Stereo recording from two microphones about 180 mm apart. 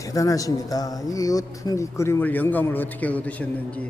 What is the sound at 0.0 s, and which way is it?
Speech, 20° left (ahead or behind).